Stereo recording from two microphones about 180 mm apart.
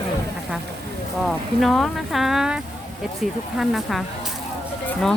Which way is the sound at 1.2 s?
Centre (ahead or behind).